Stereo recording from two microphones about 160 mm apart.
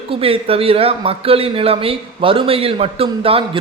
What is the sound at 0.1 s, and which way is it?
Speech, 35° right (ahead or behind).